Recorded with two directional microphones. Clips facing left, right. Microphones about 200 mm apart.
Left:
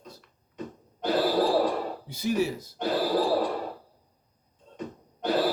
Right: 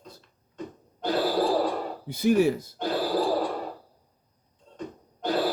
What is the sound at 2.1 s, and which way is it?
Speech, 55° right (ahead or behind).